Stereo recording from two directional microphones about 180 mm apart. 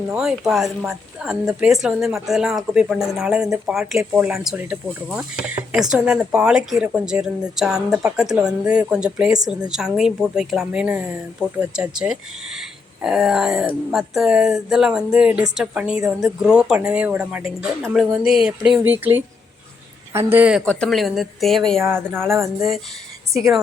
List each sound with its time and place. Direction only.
0.1 s a woman's voice: 5° right (ahead or behind)
20.7 s a woman's voice: 5° left (ahead or behind)
21.8 s speech: 10° right (ahead or behind)